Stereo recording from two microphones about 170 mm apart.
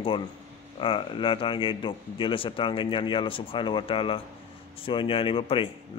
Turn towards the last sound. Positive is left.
turn(degrees=30)  # may be behind; listen again after turning